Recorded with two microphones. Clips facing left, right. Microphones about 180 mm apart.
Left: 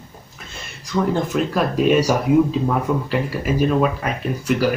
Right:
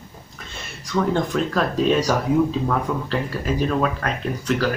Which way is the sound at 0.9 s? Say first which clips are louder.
Left 1 dB; 5° left (ahead or behind).